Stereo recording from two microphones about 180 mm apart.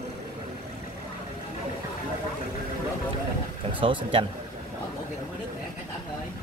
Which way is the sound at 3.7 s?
30° right (ahead or behind).